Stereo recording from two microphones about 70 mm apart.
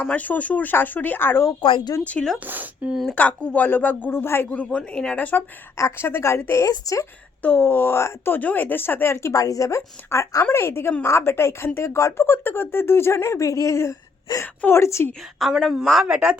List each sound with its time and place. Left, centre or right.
0.0 s speech: left
2.0 s speech: centre
2.4 s speech: right
2.9 s speech: centre
3.2 s speech: centre; by 4.4 s left
4.4 s speech: centre
5.7 s speech: left
6.7 s speech: left
7.4 s speech: left
9.3 s speech: left
15.4 s a woman's voice: centre